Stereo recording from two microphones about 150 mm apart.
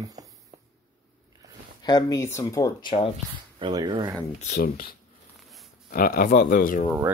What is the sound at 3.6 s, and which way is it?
Speech, 30° right (ahead or behind).